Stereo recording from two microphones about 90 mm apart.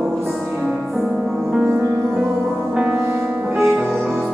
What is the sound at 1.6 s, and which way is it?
Music, 25° right (ahead or behind).